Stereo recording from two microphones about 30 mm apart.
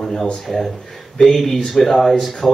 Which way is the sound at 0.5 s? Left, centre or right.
Centre.